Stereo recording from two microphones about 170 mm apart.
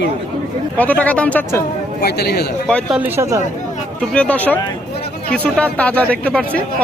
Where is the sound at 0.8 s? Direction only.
10° left (ahead or behind).